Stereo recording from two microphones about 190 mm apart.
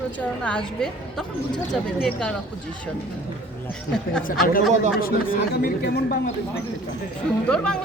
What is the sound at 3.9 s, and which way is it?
Speech, 5° left (ahead or behind).